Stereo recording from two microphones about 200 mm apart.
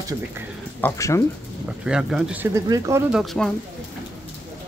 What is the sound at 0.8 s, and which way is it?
Speech, 15° left (ahead or behind).